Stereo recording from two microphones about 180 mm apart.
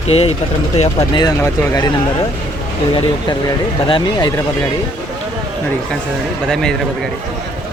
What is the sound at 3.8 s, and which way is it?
Speech, 25° left (ahead or behind).